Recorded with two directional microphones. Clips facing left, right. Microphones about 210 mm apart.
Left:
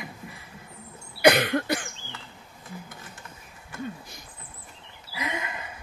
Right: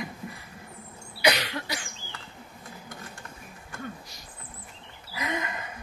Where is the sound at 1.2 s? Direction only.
50° left (ahead or behind).